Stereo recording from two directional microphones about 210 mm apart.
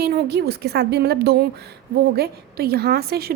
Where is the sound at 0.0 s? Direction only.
50° right (ahead or behind).